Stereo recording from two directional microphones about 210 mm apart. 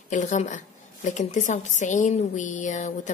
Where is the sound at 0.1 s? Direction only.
35° left (ahead or behind).